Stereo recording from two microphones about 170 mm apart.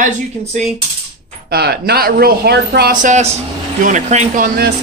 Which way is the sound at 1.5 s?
70° right (ahead or behind).